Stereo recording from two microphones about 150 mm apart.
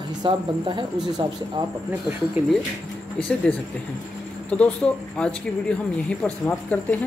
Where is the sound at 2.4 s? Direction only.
10° right (ahead or behind).